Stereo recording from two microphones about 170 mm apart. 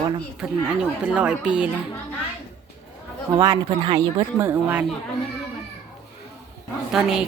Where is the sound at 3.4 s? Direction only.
25° right (ahead or behind).